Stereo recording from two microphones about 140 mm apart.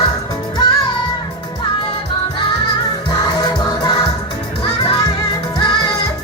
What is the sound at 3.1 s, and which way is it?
Music, 30° left (ahead or behind).